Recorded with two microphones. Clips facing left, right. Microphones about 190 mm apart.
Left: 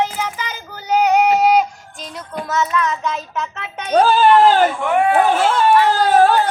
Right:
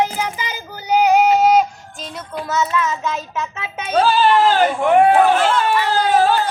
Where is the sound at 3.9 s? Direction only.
50° left (ahead or behind).